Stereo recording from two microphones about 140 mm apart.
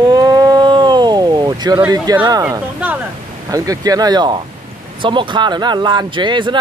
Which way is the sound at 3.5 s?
25° right (ahead or behind).